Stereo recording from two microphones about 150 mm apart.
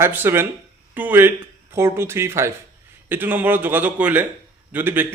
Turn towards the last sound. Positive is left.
turn(degrees=-15)  # may be behind; listen again after turning